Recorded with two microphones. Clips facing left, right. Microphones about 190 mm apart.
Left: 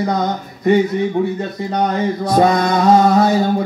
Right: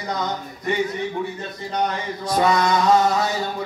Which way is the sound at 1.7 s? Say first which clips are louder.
Left 7 dB; 55° left (ahead or behind).